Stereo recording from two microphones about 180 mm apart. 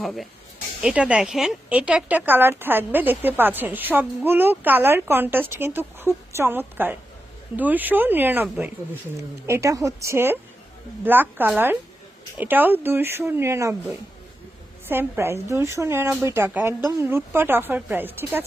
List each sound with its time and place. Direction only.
0.0 s speech: centre (ahead or behind); by 13.7 s 15° right (ahead or behind)
14.8 s speech: 10° right (ahead or behind)